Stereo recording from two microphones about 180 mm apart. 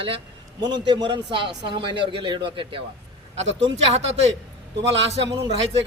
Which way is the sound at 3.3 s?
90° right.